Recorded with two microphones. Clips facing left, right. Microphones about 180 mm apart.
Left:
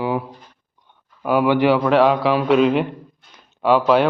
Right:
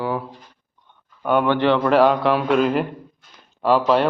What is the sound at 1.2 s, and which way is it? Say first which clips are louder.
A man's voice: left 2 dB; 5° left (ahead or behind).